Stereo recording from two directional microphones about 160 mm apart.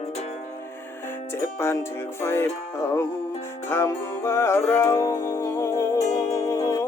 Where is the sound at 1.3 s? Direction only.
15° left (ahead or behind).